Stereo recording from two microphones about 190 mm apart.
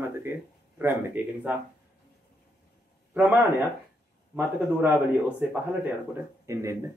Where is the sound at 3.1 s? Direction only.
10° right (ahead or behind).